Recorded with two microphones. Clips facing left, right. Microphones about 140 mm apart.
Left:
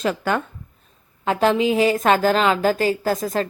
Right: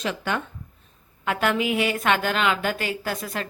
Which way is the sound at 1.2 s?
30° left (ahead or behind).